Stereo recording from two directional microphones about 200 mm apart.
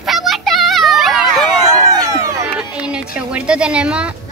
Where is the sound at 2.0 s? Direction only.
15° right (ahead or behind).